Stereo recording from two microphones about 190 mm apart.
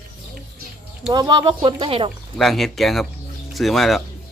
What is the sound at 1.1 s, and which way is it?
Speech, 20° right (ahead or behind).